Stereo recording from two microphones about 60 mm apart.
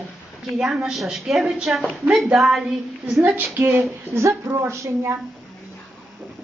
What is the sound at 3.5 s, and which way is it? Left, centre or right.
Speech, right.